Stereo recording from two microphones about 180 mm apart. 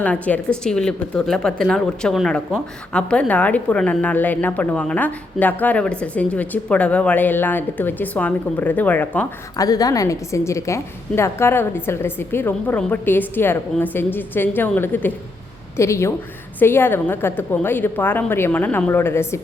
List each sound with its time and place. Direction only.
0.0 s a woman's voice: 5° left (ahead or behind)